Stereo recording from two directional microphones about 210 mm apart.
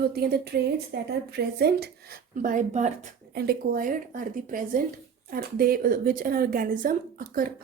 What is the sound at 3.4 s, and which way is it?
Speech, 45° right (ahead or behind).